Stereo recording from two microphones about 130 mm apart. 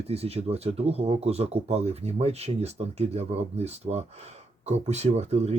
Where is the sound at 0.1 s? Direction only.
55° right (ahead or behind).